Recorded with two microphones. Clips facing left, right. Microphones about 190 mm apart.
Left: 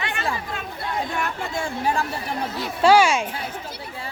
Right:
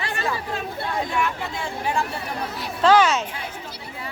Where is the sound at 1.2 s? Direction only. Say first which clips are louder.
Left 1 dB; 40° left (ahead or behind).